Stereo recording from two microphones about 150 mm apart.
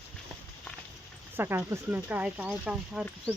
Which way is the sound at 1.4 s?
15° right (ahead or behind).